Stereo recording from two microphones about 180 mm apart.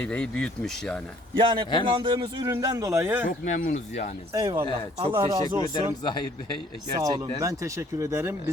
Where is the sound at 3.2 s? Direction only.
45° left (ahead or behind).